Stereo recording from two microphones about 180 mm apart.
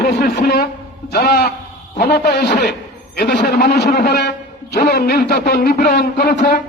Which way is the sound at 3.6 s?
65° left (ahead or behind).